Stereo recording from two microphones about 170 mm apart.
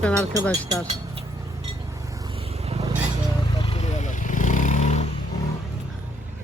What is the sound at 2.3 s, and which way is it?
Vehicle, 35° right (ahead or behind).